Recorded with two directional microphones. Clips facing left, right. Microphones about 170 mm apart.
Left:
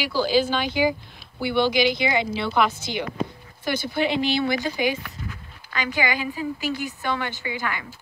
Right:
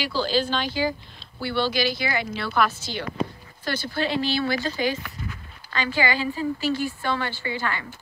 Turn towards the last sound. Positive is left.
turn(degrees=15)  # may be behind; listen again after turning